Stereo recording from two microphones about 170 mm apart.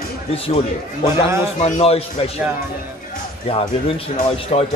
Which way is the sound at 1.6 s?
35° left (ahead or behind).